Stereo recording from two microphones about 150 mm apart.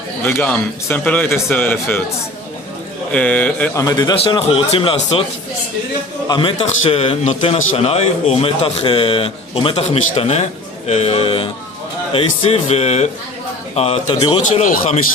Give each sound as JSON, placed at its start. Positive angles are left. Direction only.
{"t": 0.2, "sound": "a man's voice", "side_deg": 15}
{"t": 3.1, "sound": "a man's voice", "side_deg": 10}
{"t": 3.8, "sound": "a man's voice", "side_deg": 25}
{"t": 4.2, "sound": "speech", "side_deg": 40}
{"t": 6.2, "sound": "speech", "side_deg": 30}
{"t": 14.4, "sound": "speech", "side_deg": 55}